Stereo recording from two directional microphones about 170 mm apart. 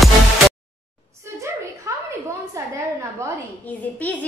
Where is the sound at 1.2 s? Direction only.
15° right (ahead or behind).